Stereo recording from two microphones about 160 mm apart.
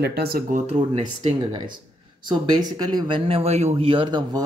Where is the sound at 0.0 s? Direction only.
80° right.